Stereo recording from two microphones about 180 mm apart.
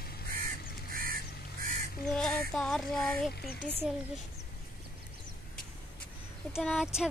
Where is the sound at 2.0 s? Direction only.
5° left (ahead or behind).